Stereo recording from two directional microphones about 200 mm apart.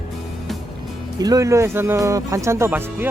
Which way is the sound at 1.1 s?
20° right (ahead or behind).